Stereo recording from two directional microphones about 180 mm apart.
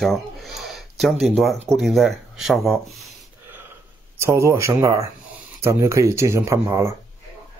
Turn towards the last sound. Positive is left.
turn(degrees=-15)  # may be behind; listen again after turning